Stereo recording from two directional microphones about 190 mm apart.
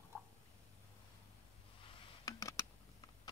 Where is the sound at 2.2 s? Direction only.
15° left (ahead or behind).